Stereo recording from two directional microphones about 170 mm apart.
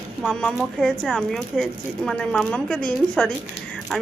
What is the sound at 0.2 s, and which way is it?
Speech, 5° left (ahead or behind).